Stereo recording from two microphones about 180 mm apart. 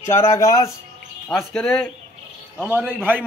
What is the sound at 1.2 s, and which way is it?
Speech, 5° left (ahead or behind).